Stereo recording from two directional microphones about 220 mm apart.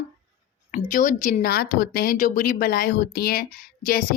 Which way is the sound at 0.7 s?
35° left (ahead or behind).